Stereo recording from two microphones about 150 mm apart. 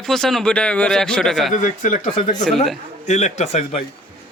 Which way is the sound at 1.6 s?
60° left (ahead or behind).